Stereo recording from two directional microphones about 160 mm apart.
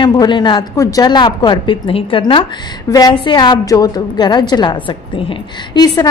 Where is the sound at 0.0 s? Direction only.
25° left (ahead or behind).